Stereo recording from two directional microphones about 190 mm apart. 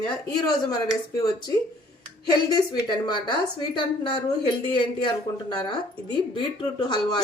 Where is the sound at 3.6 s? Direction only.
25° left (ahead or behind).